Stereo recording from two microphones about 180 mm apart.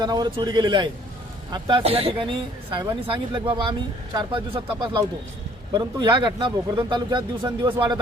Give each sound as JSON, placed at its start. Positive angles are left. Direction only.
{"t": 0.0, "sound": "speech", "side_deg": -25}